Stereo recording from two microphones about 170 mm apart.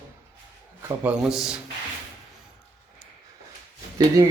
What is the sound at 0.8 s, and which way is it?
Speech, 10° right (ahead or behind).